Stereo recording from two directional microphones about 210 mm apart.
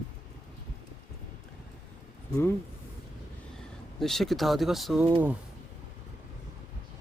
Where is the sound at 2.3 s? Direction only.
15° left (ahead or behind).